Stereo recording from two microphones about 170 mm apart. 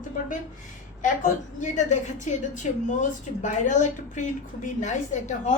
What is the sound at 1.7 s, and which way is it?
Speech, 45° left (ahead or behind).